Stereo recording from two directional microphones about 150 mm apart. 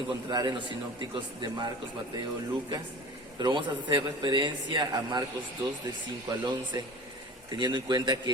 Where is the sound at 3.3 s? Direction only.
30° right (ahead or behind).